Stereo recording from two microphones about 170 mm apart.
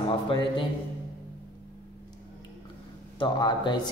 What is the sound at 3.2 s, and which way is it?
Speech, 25° left (ahead or behind).